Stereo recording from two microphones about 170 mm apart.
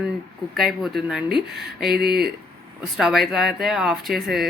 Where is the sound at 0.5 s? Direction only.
Centre (ahead or behind).